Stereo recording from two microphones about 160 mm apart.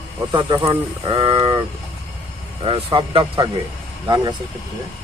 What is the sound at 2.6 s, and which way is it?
Speech, 35° right (ahead or behind).